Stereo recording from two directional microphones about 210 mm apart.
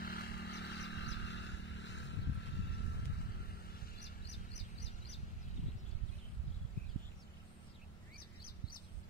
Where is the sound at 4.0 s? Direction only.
55° left (ahead or behind).